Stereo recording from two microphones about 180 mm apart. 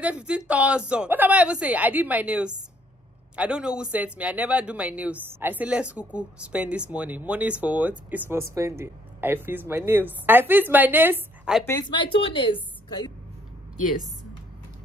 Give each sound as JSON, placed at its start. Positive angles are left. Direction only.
{"t": 0.0, "sound": "speech", "side_deg": -5}
{"t": 11.6, "sound": "a woman's voice", "side_deg": 20}